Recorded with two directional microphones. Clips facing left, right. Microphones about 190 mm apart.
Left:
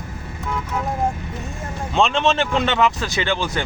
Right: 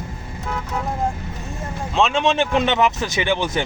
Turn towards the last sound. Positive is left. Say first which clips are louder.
# right 2 dB
turn(degrees=-20)  # may be behind; listen again after turning